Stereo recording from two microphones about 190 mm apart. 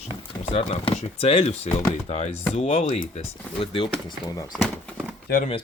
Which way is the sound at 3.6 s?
25° left (ahead or behind).